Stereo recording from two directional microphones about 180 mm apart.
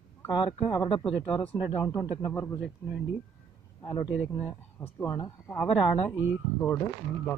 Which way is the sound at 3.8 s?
25° left (ahead or behind).